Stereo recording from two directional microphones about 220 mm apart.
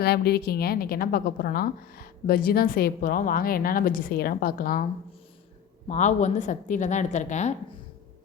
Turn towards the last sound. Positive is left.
turn(degrees=30)  # may be behind; listen again after turning